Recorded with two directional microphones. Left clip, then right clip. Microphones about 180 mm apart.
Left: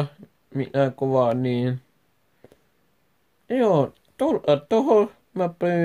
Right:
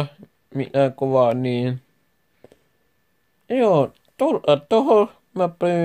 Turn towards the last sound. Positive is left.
turn(degrees=-20)  # may be behind; listen again after turning